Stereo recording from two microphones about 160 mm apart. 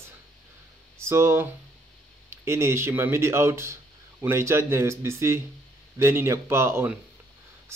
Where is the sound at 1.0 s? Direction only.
15° right (ahead or behind).